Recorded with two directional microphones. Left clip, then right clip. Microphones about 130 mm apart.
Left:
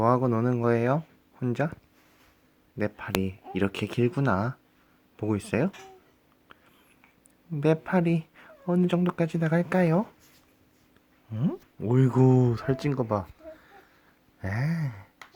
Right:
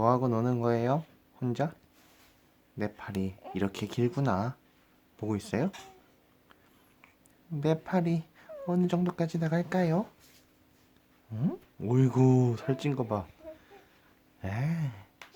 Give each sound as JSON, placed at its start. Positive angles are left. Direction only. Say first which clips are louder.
{"t": 0.0, "sound": "speech", "louder": "left 3 dB", "side_deg": 20}
{"t": 2.7, "sound": "speech", "louder": "left 6 dB", "side_deg": 20}
{"t": 7.5, "sound": "speech", "louder": "left 5 dB", "side_deg": 25}
{"t": 11.3, "sound": "speech", "louder": "left 3 dB", "side_deg": 20}
{"t": 14.4, "sound": "speech", "louder": "left 4 dB", "side_deg": 25}